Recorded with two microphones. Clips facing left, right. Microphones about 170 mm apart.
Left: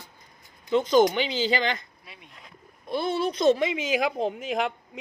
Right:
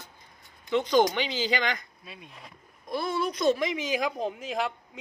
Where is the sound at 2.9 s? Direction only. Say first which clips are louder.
Left 3 dB; 25° left (ahead or behind).